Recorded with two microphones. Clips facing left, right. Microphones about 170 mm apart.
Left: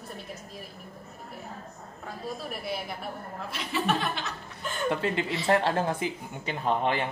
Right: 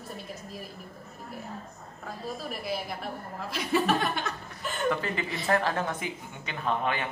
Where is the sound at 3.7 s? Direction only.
50° right (ahead or behind).